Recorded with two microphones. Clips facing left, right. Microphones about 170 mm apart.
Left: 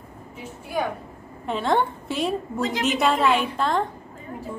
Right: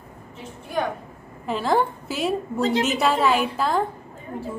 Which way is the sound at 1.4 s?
Centre (ahead or behind).